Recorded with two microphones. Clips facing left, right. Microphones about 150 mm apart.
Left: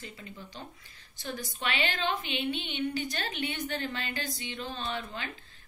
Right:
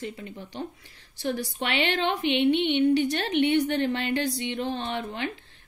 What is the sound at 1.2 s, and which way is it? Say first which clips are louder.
A woman's voice: right 7 dB; 75° right (ahead or behind).